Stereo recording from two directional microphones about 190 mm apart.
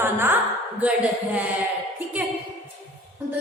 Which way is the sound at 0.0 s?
10° right (ahead or behind).